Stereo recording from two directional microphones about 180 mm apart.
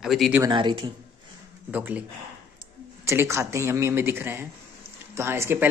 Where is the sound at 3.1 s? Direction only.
15° right (ahead or behind).